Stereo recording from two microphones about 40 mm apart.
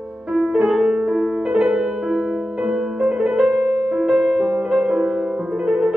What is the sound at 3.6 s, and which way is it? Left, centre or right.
Music, left.